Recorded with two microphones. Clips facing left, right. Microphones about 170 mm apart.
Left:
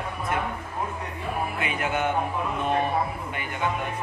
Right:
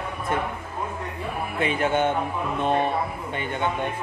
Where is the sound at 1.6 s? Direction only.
30° right (ahead or behind).